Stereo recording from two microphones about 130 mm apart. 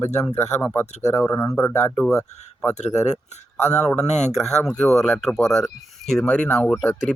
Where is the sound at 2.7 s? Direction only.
60° left (ahead or behind).